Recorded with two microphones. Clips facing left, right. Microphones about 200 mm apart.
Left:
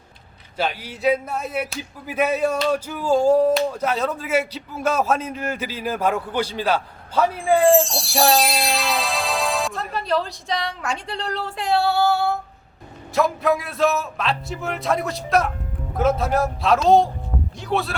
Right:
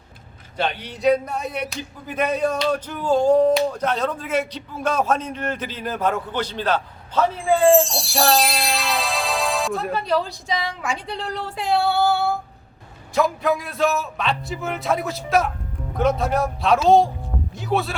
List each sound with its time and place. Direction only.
0.5 s speech: 5° left (ahead or behind)